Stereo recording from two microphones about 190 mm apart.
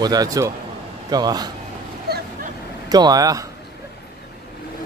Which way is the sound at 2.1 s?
55° right (ahead or behind).